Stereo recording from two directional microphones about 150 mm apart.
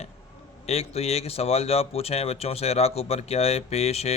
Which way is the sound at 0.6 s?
45° left (ahead or behind).